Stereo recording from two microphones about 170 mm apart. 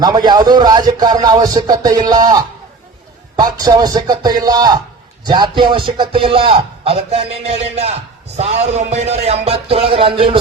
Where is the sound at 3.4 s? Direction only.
25° right (ahead or behind).